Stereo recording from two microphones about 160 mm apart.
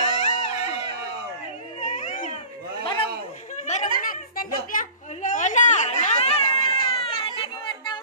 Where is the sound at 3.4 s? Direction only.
50° left (ahead or behind).